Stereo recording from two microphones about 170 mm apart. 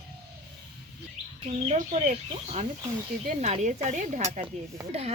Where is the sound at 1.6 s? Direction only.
40° right (ahead or behind).